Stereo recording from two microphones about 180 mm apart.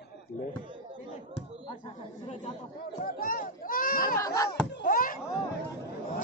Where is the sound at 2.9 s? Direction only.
50° left (ahead or behind).